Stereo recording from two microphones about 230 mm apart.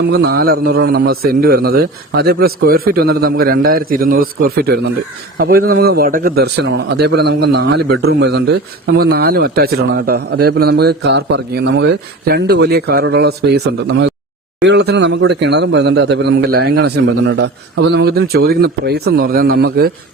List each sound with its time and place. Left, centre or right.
0.0 s a man's voice: right